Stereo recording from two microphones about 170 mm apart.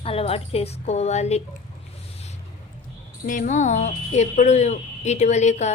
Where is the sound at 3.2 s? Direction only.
50° left (ahead or behind).